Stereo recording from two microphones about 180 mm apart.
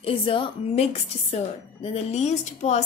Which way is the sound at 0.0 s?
30° left (ahead or behind).